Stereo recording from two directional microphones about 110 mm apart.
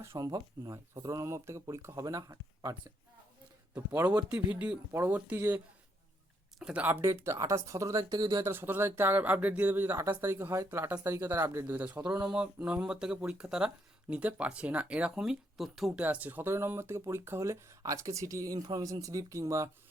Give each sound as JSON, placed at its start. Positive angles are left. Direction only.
{"t": 0.0, "sound": "speech", "side_deg": -25}
{"t": 3.8, "sound": "speech", "side_deg": -20}
{"t": 6.6, "sound": "speech", "side_deg": -5}
{"t": 6.8, "sound": "speech", "side_deg": -20}
{"t": 8.4, "sound": "speech", "side_deg": -20}
{"t": 16.0, "sound": "speech", "side_deg": -15}